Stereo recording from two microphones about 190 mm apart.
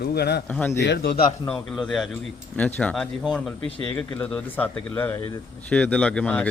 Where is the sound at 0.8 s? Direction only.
60° left (ahead or behind).